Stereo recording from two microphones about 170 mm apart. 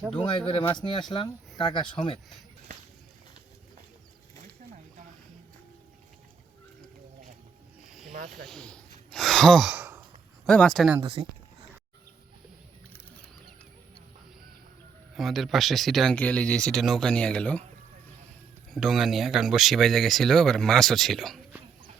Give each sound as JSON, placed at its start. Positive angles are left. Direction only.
{"t": 0.2, "sound": "speech", "side_deg": 30}
{"t": 4.4, "sound": "wild animals", "side_deg": -45}
{"t": 7.9, "sound": "snake", "side_deg": 0}
{"t": 8.4, "sound": "a sound", "side_deg": 5}
{"t": 10.4, "sound": "speech", "side_deg": 5}
{"t": 11.0, "sound": "speech", "side_deg": -30}
{"t": 15.1, "sound": "speech", "side_deg": 0}
{"t": 18.7, "sound": "speech", "side_deg": 0}